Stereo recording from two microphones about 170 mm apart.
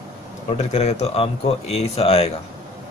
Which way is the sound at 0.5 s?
40° left (ahead or behind).